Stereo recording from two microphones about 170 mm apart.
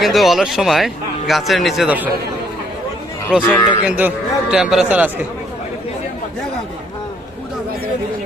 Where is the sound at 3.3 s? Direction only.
5° right (ahead or behind).